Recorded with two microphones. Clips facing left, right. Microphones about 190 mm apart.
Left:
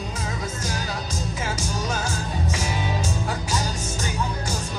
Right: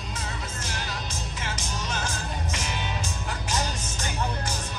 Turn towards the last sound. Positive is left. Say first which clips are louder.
# left 3 dB
turn(degrees=40)  # may be behind; listen again after turning